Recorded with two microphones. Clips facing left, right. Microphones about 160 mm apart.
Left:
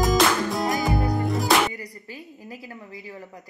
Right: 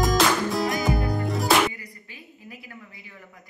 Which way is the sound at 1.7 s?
35° left (ahead or behind).